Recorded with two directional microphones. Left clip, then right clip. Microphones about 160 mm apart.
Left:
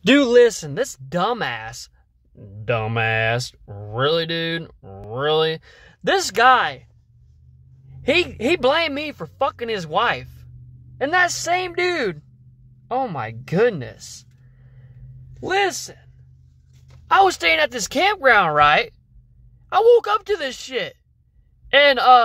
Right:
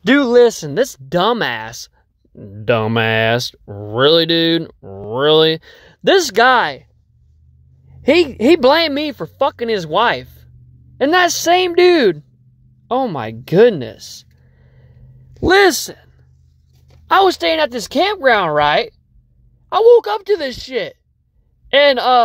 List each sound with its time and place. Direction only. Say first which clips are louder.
0.0 s speech: right 2 dB; 5° right (ahead or behind)
0.5 s speech: right 6 dB; 35° right (ahead or behind)
8.0 s speech: right 6 dB; 35° right (ahead or behind)
15.4 s a man's voice: right 9 dB; 60° right (ahead or behind)
17.1 s speech: right 3 dB; 25° right (ahead or behind)